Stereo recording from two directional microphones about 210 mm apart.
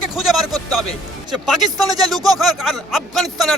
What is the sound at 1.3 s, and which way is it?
A man's voice, centre (ahead or behind).